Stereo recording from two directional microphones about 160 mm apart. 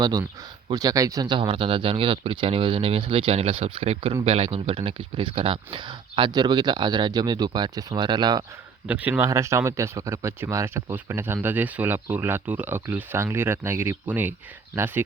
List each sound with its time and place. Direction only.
0.0 s speech: 25° right (ahead or behind)
8.9 s speech: 10° right (ahead or behind)